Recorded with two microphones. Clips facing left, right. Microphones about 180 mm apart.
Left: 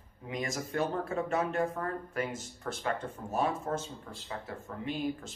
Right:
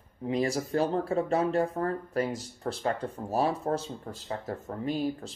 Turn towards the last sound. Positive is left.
turn(degrees=-35)  # may be behind; listen again after turning